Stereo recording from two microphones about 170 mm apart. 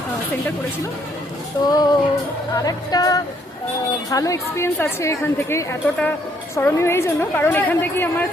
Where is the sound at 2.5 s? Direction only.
20° left (ahead or behind).